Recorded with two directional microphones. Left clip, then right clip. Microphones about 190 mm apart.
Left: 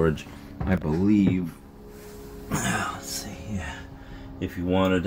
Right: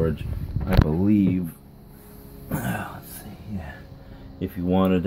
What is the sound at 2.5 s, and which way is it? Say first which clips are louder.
Speech: left 3 dB; 15° right (ahead or behind).